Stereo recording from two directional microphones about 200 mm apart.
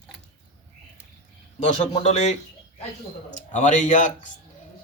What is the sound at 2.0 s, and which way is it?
Speech, 35° left (ahead or behind).